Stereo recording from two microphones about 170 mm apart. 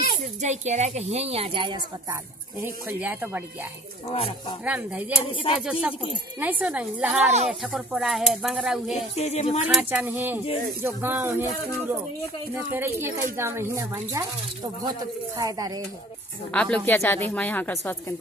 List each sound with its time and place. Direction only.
0.4 s speech: 40° right (ahead or behind)
2.6 s speech: 10° right (ahead or behind)
4.1 s a sound: 35° left (ahead or behind)
4.6 s speech: 10° right (ahead or behind)
5.2 s a sound: 30° left (ahead or behind)
5.6 s speech: 5° right (ahead or behind)
9.1 s a sound: 40° left (ahead or behind)
9.8 s speech: 10° right (ahead or behind)
12.7 s speech: 15° right (ahead or behind)
16.5 s a woman's voice: 5° left (ahead or behind)